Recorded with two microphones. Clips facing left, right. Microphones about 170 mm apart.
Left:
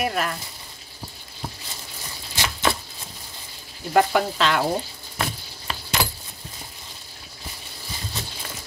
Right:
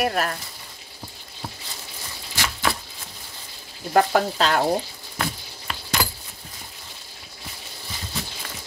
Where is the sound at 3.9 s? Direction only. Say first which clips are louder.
Even; 40° right (ahead or behind).